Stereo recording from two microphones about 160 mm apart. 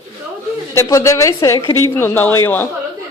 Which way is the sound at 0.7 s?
15° left (ahead or behind).